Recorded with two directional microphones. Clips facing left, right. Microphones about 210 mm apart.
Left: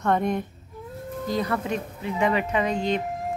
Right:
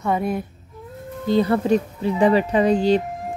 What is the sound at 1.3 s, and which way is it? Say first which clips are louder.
Speech: right 9 dB; 30° right (ahead or behind).